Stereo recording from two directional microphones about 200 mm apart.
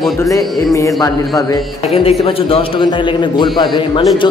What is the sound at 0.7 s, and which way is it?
Speech, 15° left (ahead or behind).